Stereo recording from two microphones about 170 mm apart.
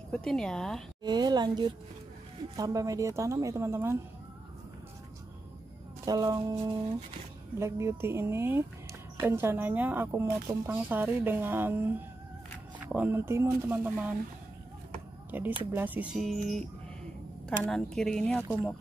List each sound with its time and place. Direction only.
0.1 s a woman's voice: 5° left (ahead or behind)
1.0 s a woman's voice: 25° right (ahead or behind)
6.0 s a woman's voice: 20° right (ahead or behind)
15.6 s a woman's voice: 10° right (ahead or behind)